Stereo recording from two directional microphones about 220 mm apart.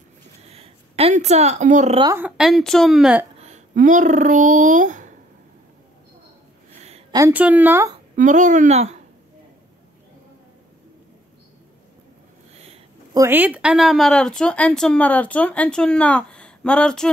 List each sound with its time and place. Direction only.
0.4 s speech: 25° right (ahead or behind)
2.0 s speech: 10° right (ahead or behind)
3.3 s speech: 30° right (ahead or behind)
6.8 s a sound: 30° right (ahead or behind)
7.2 s speech: 10° right (ahead or behind)
8.2 s speech: 35° right (ahead or behind)
13.1 s speech: 10° right (ahead or behind)